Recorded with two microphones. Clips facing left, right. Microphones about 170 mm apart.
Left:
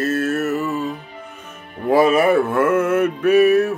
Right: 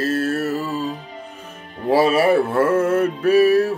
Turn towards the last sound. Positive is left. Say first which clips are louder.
# left 1 dB
turn(degrees=-30)  # may be behind; listen again after turning